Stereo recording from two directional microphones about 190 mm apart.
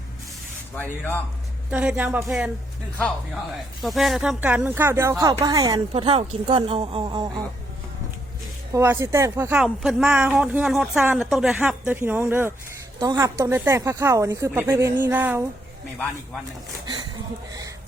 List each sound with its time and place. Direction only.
0.8 s speech: 10° left (ahead or behind)
1.7 s speech: 5° right (ahead or behind)
3.8 s speech: centre (ahead or behind); by 5.8 s 20° right (ahead or behind)
5.9 s a woman's voice: 30° right (ahead or behind)
8.7 s speech: 15° right (ahead or behind)